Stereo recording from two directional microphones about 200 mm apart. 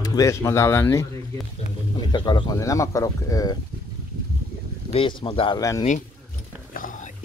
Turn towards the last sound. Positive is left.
turn(degrees=45)  # may be behind; listen again after turning